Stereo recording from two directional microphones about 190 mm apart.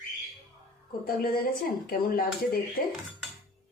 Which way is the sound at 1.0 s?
50° left (ahead or behind).